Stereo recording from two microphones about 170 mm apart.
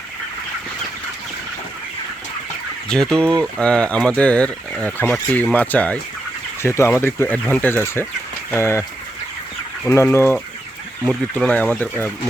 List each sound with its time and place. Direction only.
2.9 s speech: 5° left (ahead or behind)
9.8 s speech: 15° left (ahead or behind)